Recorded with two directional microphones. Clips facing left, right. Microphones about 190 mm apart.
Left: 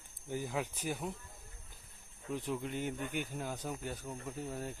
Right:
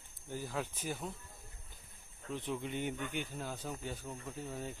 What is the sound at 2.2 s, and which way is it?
Speech, 10° left (ahead or behind).